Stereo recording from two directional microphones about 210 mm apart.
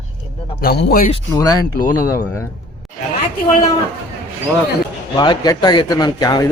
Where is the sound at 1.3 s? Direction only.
15° left (ahead or behind).